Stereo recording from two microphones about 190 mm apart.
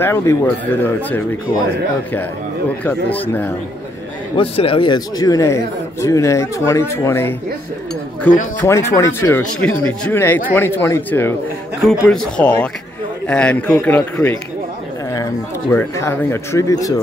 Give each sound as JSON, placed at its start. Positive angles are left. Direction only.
{"t": 0.0, "sound": "a man's voice", "side_deg": 15}
{"t": 2.8, "sound": "a man's voice", "side_deg": 10}
{"t": 4.4, "sound": "a man's voice", "side_deg": 30}
{"t": 8.5, "sound": "a man's voice", "side_deg": 15}
{"t": 15.7, "sound": "a man's voice", "side_deg": 10}